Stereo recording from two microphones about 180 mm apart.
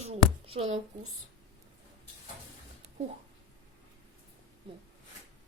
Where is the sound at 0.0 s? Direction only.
35° right (ahead or behind).